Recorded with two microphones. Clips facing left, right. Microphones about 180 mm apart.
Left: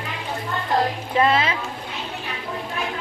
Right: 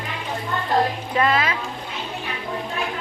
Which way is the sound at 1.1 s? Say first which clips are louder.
Left 2 dB; 25° left (ahead or behind).